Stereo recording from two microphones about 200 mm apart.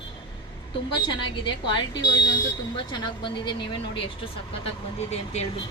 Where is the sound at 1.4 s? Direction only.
25° left (ahead or behind).